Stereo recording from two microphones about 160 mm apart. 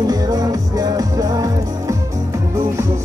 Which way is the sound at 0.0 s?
25° right (ahead or behind).